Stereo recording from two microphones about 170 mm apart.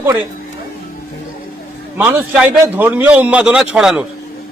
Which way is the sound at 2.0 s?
10° right (ahead or behind).